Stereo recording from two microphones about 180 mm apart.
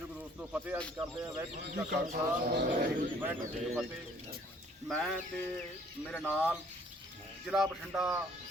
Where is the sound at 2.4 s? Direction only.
60° right (ahead or behind).